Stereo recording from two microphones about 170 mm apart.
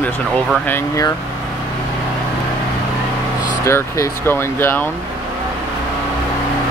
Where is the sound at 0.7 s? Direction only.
20° left (ahead or behind).